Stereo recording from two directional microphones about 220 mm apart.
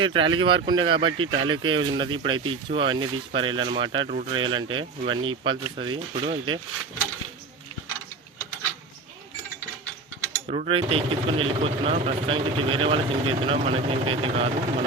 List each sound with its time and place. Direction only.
0.0 s speech: 20° right (ahead or behind)
10.5 s speech: 25° right (ahead or behind)